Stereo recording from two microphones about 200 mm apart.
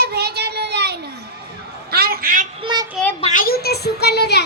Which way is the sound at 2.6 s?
20° right (ahead or behind).